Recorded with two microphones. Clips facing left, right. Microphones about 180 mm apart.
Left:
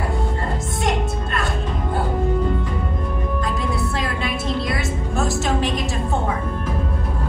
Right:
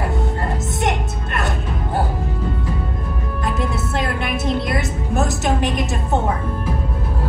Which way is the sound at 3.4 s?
20° right (ahead or behind).